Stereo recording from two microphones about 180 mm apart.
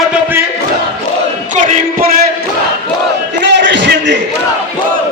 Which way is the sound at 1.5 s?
50° right (ahead or behind).